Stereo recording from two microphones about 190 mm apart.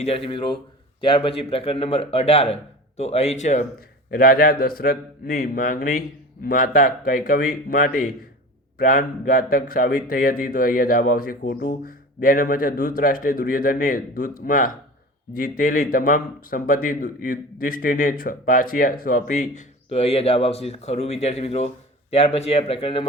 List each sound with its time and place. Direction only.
0.0 s a man's voice: 30° left (ahead or behind)
3.8 s a man's voice: 50° left (ahead or behind); by 23.0 s 30° left (ahead or behind)